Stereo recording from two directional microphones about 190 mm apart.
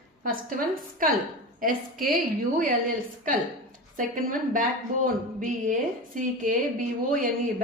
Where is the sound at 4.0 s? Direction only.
45° right (ahead or behind).